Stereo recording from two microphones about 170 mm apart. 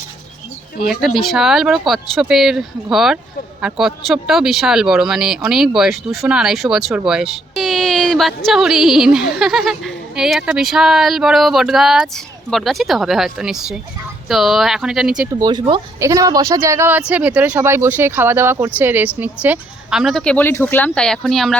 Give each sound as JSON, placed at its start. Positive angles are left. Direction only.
{"t": 0.9, "sound": "speech", "side_deg": 0}
{"t": 15.3, "sound": "speech", "side_deg": -25}